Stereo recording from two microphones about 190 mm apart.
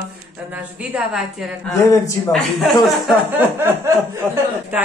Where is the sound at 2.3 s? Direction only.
Centre (ahead or behind).